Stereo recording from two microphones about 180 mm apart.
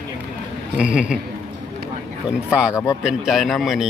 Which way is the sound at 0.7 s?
5° right (ahead or behind).